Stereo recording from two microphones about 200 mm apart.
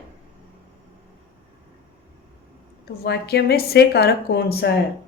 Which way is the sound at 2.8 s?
50° left (ahead or behind).